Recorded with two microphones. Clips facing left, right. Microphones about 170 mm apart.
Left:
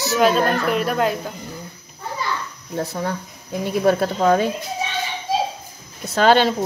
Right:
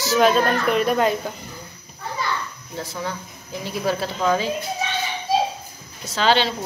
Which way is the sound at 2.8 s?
50° left (ahead or behind).